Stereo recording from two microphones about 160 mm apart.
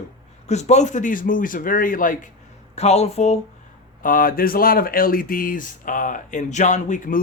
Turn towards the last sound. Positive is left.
turn(degrees=55)  # may be behind; listen again after turning